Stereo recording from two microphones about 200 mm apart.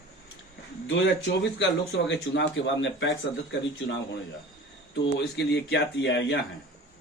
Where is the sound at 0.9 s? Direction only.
60° left (ahead or behind).